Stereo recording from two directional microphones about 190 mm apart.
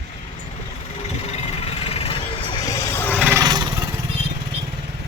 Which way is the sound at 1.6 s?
30° left (ahead or behind).